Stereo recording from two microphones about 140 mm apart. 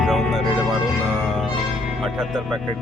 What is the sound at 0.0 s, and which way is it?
Music, centre (ahead or behind).